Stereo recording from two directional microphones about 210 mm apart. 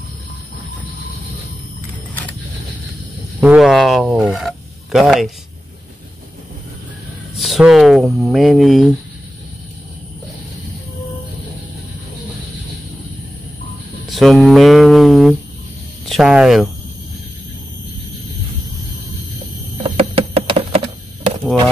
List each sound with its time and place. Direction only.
3.3 s speech: 5° right (ahead or behind)
7.3 s speech: centre (ahead or behind)
14.1 s speech: centre (ahead or behind)
19.8 s a sound: 30° right (ahead or behind)